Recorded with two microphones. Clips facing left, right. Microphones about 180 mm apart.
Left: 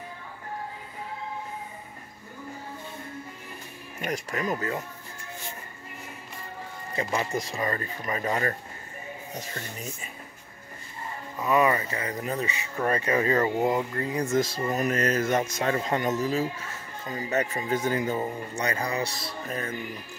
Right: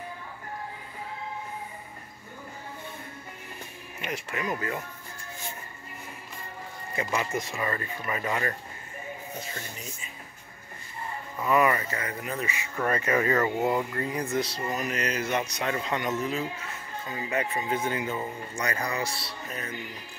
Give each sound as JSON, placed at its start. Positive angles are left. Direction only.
{"t": 4.0, "sound": "speech", "side_deg": 40}
{"t": 7.0, "sound": "speech", "side_deg": 30}
{"t": 11.4, "sound": "speech", "side_deg": 20}
{"t": 13.6, "sound": "speech", "side_deg": 20}
{"t": 13.9, "sound": "speech", "side_deg": 30}
{"t": 14.2, "sound": "speech", "side_deg": 45}
{"t": 18.6, "sound": "speech", "side_deg": 30}
{"t": 19.1, "sound": "speech", "side_deg": 45}